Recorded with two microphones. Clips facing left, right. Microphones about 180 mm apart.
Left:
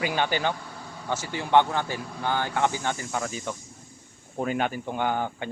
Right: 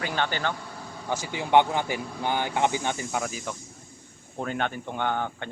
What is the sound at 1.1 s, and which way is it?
Speech, 15° right (ahead or behind).